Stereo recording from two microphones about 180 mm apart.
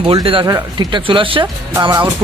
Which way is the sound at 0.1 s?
30° right (ahead or behind).